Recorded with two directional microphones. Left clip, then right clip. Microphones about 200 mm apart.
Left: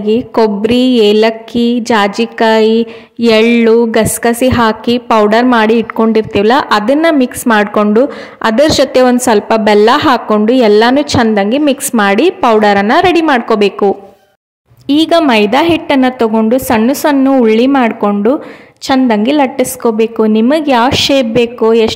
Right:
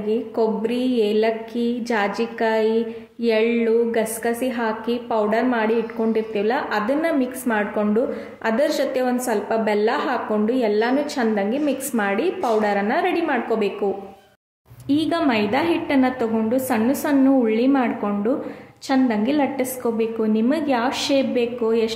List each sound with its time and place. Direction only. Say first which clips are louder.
0.0 s a woman's voice: left 11 dB; 45° left (ahead or behind)
14.9 s a woman's voice: left 12 dB; 45° left (ahead or behind)